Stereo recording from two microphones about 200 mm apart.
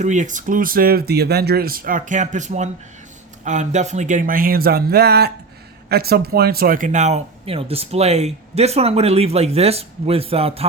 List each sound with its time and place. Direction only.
0.0 s speech: 40° right (ahead or behind)